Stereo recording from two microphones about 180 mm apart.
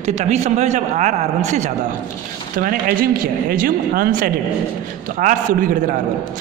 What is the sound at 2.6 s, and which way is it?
Speech, 55° right (ahead or behind).